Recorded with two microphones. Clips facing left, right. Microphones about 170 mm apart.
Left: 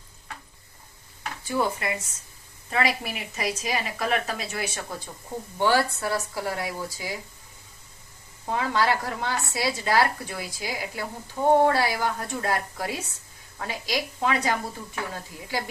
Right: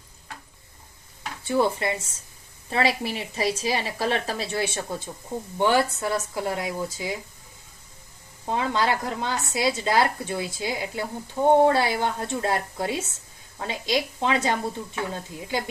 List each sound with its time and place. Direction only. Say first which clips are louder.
1.5 s speech: right 4 dB; 30° right (ahead or behind)
8.4 s speech: even; 20° right (ahead or behind)